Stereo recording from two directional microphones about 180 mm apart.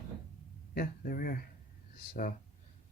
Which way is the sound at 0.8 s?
55° left (ahead or behind).